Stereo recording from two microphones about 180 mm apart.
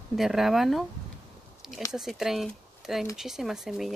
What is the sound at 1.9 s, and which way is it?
Speech, centre (ahead or behind).